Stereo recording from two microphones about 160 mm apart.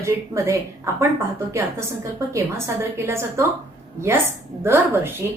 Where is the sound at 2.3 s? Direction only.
15° right (ahead or behind).